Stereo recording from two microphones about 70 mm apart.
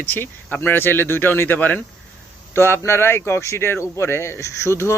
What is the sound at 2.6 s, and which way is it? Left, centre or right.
Speech, left.